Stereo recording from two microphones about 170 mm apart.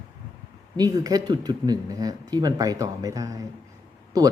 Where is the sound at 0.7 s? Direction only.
20° right (ahead or behind).